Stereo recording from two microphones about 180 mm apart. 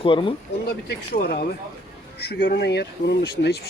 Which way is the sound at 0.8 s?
60° left (ahead or behind).